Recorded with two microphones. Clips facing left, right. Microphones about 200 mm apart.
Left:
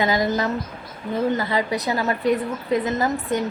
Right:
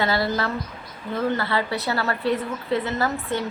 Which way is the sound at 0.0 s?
15° left (ahead or behind).